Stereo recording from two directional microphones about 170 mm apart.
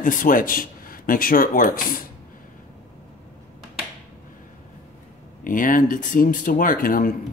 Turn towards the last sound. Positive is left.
turn(degrees=55)  # may be behind; listen again after turning